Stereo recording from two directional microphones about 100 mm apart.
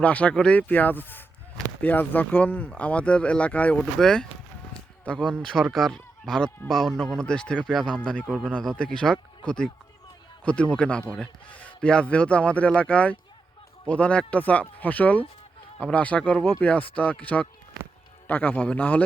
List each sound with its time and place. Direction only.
0.0 s speech: 15° left (ahead or behind)
5.7 s speech: 5° left (ahead or behind)